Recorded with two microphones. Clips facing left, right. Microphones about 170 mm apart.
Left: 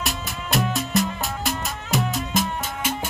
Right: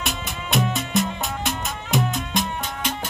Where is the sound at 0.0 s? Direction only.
Centre (ahead or behind).